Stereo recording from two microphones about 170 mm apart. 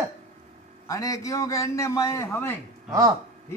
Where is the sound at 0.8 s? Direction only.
20° left (ahead or behind).